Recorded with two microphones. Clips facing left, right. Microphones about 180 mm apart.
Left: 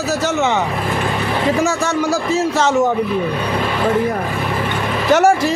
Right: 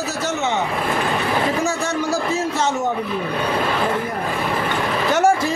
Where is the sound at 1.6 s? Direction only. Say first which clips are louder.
Left 4 dB; 90° left.